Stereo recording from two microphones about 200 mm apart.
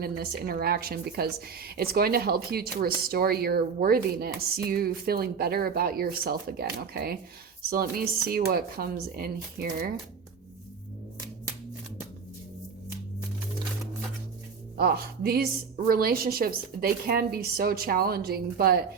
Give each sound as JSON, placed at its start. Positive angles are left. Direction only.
{"t": 0.0, "sound": "speech", "side_deg": -50}
{"t": 14.8, "sound": "speech", "side_deg": -50}